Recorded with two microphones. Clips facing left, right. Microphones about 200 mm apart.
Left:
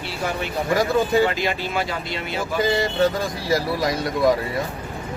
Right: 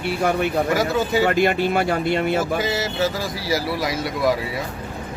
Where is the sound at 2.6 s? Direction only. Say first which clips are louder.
Left 3 dB; 5° right (ahead or behind).